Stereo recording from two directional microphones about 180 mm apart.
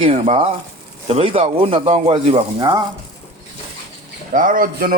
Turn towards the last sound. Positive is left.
turn(degrees=-50)  # may be behind; listen again after turning